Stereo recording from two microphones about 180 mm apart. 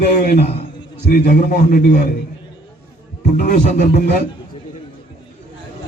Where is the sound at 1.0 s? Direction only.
60° left (ahead or behind).